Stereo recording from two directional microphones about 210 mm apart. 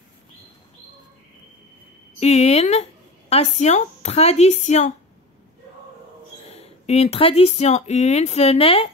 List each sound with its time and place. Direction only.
2.1 s a woman's voice: 30° left (ahead or behind)
6.5 s speech: 30° left (ahead or behind)